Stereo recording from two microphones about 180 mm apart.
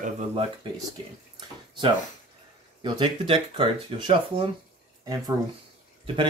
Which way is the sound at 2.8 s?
25° right (ahead or behind).